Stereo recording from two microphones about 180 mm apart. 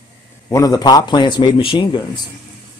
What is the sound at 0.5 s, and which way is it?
Speech, 20° left (ahead or behind).